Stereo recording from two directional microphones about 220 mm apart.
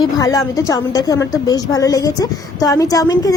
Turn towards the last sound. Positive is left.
turn(degrees=15)  # may be behind; listen again after turning